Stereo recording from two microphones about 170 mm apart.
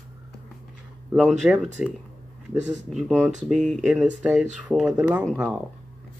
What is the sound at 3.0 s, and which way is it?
Speech, 5° right (ahead or behind).